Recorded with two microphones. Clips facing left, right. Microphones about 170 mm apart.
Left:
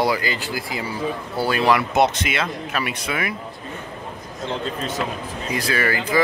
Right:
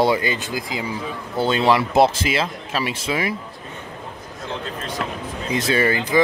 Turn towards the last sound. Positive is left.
turn(degrees=-25)  # may be behind; listen again after turning